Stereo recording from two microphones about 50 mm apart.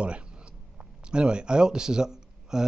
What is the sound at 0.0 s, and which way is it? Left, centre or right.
Speech, right.